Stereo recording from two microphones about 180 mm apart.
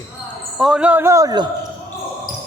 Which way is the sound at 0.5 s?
5° right (ahead or behind).